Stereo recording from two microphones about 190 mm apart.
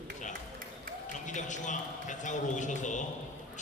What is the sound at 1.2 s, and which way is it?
A man's voice, 40° left (ahead or behind).